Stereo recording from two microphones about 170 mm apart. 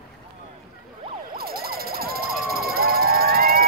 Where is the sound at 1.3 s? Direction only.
60° right (ahead or behind).